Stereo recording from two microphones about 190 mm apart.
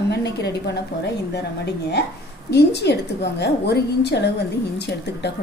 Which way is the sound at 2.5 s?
65° left (ahead or behind).